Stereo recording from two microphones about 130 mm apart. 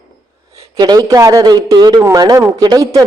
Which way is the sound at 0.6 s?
30° right (ahead or behind).